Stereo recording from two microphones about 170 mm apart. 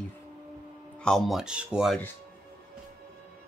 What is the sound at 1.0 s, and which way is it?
Speech, centre (ahead or behind).